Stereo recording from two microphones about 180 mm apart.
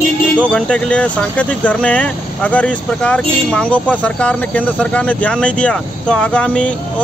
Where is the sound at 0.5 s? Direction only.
5° left (ahead or behind).